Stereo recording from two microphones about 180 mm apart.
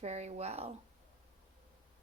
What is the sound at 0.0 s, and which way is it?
Speech, 40° right (ahead or behind).